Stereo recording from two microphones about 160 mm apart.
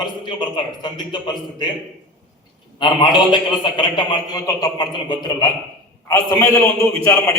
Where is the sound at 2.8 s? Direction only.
25° left (ahead or behind).